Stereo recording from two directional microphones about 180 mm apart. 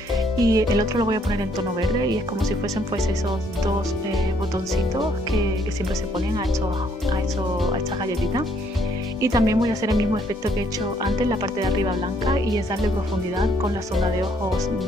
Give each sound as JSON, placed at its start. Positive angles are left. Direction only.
{"t": 0.4, "sound": "speech", "side_deg": -20}
{"t": 9.2, "sound": "speech", "side_deg": -20}